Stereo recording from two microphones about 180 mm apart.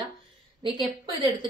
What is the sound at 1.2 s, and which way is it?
Speech, 25° right (ahead or behind).